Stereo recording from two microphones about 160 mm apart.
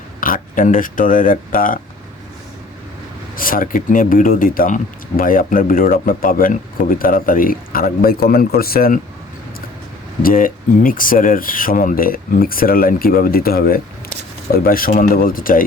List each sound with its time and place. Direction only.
0.2 s speech: 60° left (ahead or behind)
3.3 s speech: 60° left (ahead or behind)
10.2 s speech: 60° left (ahead or behind)